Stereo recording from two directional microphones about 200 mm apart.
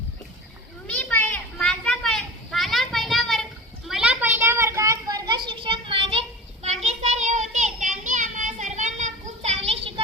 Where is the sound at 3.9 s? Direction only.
5° right (ahead or behind).